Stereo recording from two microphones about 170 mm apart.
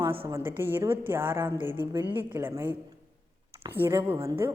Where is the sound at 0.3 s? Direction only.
15° right (ahead or behind).